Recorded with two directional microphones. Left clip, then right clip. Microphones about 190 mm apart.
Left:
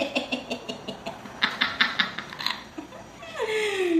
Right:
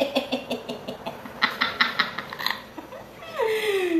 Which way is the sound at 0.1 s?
15° right (ahead or behind).